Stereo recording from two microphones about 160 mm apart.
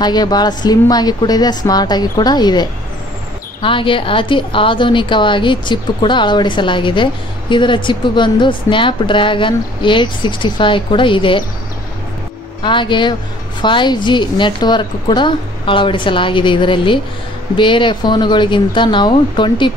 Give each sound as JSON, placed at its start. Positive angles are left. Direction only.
{"t": 0.0, "sound": "a woman's voice", "side_deg": 25}
{"t": 12.6, "sound": "a woman's voice", "side_deg": 30}